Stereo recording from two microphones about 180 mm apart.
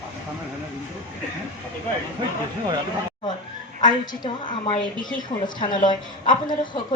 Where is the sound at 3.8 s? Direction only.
25° left (ahead or behind).